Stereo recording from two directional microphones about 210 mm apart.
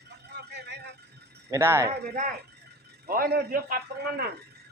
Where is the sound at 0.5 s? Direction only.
55° right (ahead or behind).